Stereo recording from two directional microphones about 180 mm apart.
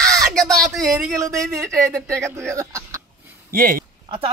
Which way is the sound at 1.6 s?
Centre (ahead or behind).